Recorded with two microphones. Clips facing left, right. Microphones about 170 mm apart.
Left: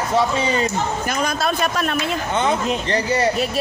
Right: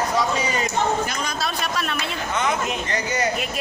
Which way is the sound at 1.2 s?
50° left (ahead or behind).